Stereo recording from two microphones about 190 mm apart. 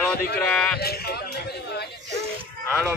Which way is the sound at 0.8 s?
55° left (ahead or behind).